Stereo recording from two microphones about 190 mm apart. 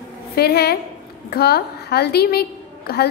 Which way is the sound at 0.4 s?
55° left (ahead or behind).